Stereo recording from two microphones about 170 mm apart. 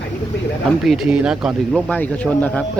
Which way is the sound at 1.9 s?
10° left (ahead or behind).